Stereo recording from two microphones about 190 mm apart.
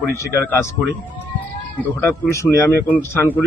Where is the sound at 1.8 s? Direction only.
15° left (ahead or behind).